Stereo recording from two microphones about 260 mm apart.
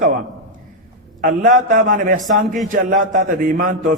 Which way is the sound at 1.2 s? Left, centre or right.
Right.